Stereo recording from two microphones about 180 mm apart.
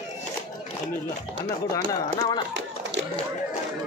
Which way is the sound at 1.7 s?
20° left (ahead or behind).